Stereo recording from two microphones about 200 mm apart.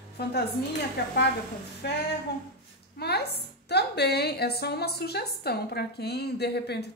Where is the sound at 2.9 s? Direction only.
55° left (ahead or behind).